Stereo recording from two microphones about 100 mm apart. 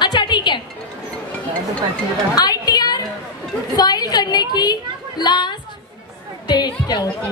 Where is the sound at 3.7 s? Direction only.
40° left (ahead or behind).